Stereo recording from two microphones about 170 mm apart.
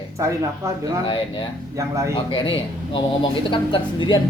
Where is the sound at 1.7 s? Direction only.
20° right (ahead or behind).